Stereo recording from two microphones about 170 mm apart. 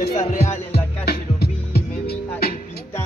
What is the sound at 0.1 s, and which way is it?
Music, 45° left (ahead or behind).